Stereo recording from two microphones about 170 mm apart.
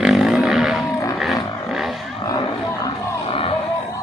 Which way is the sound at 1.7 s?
Centre (ahead or behind).